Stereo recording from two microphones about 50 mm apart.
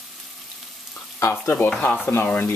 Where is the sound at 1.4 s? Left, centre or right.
Left.